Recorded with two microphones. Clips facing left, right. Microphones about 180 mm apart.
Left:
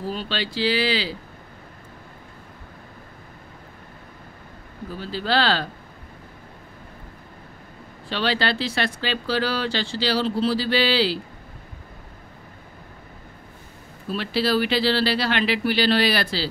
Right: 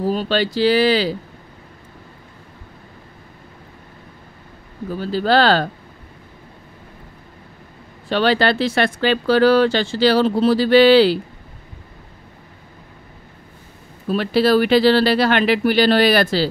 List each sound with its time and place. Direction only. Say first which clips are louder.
0.0 s speech: right 9 dB; 45° right (ahead or behind)
4.9 s speech: right 7 dB; 45° right (ahead or behind)
8.1 s speech: right 7 dB; 50° right (ahead or behind)
14.0 s speech: right 7 dB; 50° right (ahead or behind)